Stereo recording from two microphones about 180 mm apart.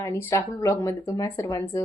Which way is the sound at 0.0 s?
15° left (ahead or behind).